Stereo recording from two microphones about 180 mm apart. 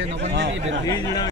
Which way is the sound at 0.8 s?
20° left (ahead or behind).